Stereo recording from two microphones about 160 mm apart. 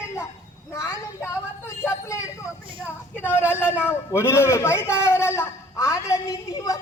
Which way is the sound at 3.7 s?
15° left (ahead or behind).